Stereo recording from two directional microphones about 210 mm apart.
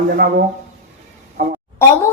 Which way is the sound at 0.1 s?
45° right (ahead or behind).